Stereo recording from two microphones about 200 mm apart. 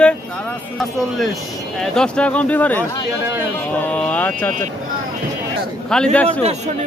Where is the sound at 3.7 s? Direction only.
5° left (ahead or behind).